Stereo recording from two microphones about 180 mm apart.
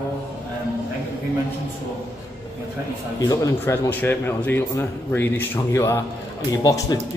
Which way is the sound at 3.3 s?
15° left (ahead or behind).